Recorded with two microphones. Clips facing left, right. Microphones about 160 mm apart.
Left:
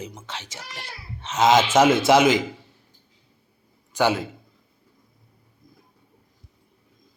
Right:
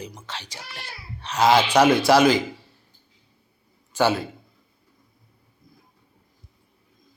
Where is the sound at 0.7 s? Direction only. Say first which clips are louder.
Left 1 dB; 20° left (ahead or behind).